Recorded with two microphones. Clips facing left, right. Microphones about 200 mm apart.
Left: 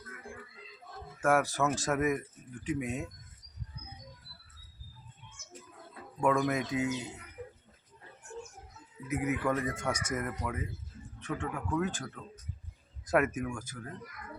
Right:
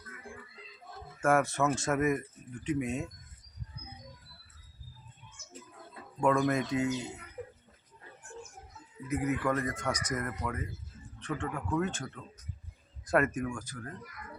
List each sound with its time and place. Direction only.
1.2 s speech: centre (ahead or behind)
6.1 s speech: 5° left (ahead or behind)
7.4 s a sound: 40° right (ahead or behind)
9.0 s speech: 5° left (ahead or behind)
9.9 s speech: 25° left (ahead or behind)
10.2 s speech: 5° left (ahead or behind)